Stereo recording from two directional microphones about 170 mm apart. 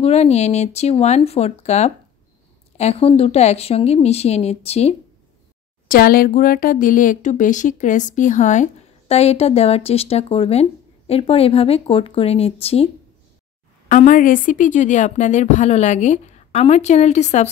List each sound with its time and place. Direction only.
0.0 s speech: 40° left (ahead or behind)
5.9 s speech: 60° left (ahead or behind); by 12.9 s 35° left (ahead or behind)
13.8 s a woman's voice: 50° left (ahead or behind)